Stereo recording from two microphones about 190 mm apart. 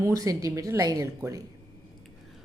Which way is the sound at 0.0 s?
20° right (ahead or behind).